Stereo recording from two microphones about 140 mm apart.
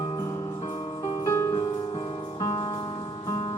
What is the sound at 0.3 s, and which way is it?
Music, 25° left (ahead or behind).